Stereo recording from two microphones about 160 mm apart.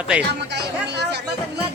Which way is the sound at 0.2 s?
90° right.